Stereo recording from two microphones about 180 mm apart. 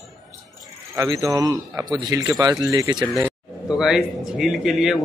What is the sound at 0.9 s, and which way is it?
Speech, 20° right (ahead or behind).